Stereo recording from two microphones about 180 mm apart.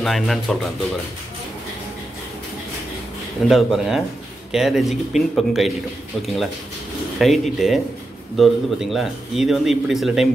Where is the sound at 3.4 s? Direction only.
Centre (ahead or behind).